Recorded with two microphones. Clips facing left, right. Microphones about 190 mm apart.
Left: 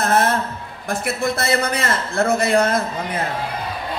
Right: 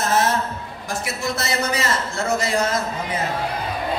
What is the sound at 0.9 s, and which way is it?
A man's voice, 55° left (ahead or behind).